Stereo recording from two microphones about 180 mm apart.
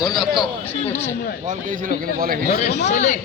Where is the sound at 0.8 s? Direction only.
10° left (ahead or behind).